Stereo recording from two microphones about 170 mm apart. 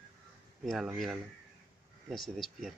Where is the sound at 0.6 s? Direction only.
Centre (ahead or behind).